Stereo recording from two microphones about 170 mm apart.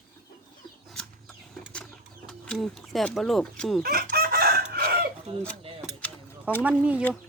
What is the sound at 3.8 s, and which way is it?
Chicken, 60° right (ahead or behind).